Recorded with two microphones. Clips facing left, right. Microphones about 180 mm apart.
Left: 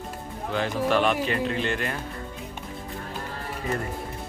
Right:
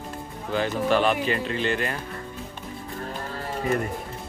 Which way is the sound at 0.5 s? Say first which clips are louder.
Right 1 dB; centre (ahead or behind).